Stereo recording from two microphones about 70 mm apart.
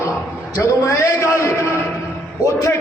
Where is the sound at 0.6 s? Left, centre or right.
Left.